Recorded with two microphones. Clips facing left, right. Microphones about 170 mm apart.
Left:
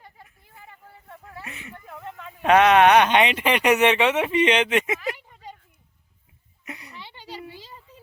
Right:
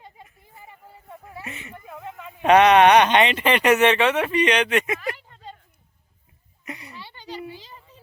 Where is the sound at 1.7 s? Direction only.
5° right (ahead or behind); by 4.9 s 20° left (ahead or behind).